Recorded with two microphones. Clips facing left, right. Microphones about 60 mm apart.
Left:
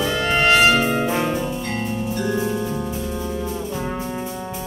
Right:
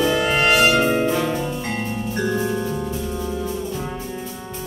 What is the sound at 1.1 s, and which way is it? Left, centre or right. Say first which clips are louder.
Music: even; left.